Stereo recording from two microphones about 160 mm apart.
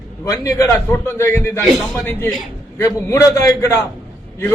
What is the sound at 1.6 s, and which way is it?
Speech, centre (ahead or behind).